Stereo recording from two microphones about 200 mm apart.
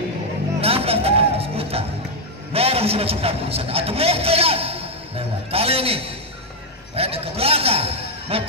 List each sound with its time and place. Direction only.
0.6 s music: 30° right (ahead or behind)
2.5 s a man's voice: 30° right (ahead or behind)